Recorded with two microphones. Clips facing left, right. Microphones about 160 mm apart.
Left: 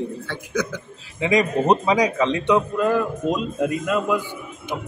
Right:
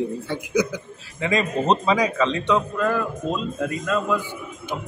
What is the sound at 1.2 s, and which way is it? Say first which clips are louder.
A man's voice: left 3 dB; 15° left (ahead or behind).